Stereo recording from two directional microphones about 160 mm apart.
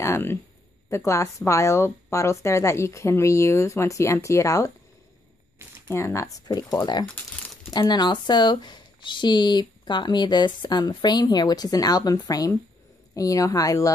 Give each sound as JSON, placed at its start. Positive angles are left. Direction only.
{"t": 0.0, "sound": "a woman's voice", "side_deg": 15}
{"t": 5.9, "sound": "speech", "side_deg": 15}